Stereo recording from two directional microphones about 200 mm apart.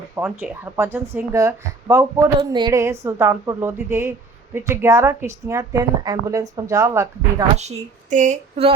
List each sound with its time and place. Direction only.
0.2 s speech: 10° right (ahead or behind)
7.5 s speech: 35° right (ahead or behind)